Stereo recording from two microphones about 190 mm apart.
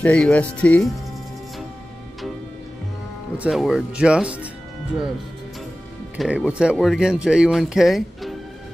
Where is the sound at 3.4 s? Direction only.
5° right (ahead or behind).